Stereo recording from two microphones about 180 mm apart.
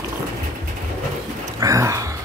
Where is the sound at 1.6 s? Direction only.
20° right (ahead or behind).